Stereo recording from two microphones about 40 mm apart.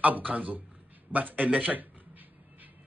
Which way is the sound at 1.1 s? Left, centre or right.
Right.